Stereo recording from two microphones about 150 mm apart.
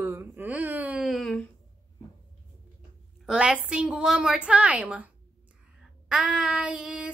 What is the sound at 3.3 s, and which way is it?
Child singing, 5° right (ahead or behind).